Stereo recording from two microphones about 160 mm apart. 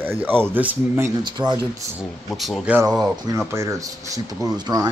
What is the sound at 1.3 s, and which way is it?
Speech, 30° right (ahead or behind).